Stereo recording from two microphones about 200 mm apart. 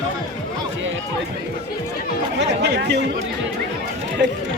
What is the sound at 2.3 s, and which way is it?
Speech, 60° right (ahead or behind).